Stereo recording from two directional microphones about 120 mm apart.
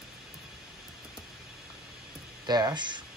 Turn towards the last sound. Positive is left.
turn(degrees=-40)  # may be behind; listen again after turning